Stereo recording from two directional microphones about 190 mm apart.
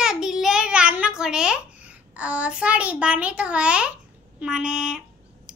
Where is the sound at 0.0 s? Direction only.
5° right (ahead or behind).